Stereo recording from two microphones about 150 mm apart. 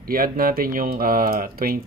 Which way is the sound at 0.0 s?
70° right (ahead or behind).